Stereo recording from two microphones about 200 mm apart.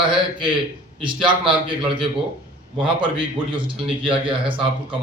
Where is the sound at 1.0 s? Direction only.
25° right (ahead or behind).